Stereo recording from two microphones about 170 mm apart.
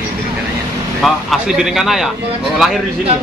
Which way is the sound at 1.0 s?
Centre (ahead or behind).